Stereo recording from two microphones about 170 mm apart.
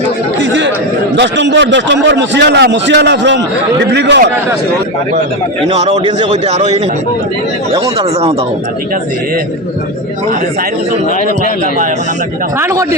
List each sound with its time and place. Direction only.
1.1 s a man's voice: 90° right
5.7 s a man's voice: 40° right (ahead or behind)
12.5 s a man's voice: 15° right (ahead or behind)